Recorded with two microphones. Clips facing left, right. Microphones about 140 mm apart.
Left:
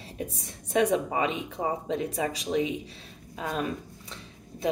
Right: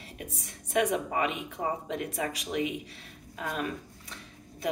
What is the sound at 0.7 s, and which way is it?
Speech, 25° left (ahead or behind).